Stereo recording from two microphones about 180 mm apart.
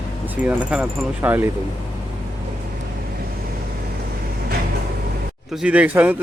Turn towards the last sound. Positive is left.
turn(degrees=-10)  # may be behind; listen again after turning